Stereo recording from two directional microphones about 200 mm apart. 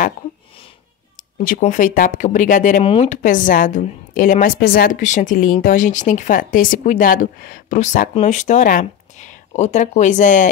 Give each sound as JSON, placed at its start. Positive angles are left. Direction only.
{"t": 1.4, "sound": "a woman's voice", "side_deg": 40}
{"t": 2.8, "sound": "speech", "side_deg": 30}
{"t": 3.2, "sound": "a woman's voice", "side_deg": 40}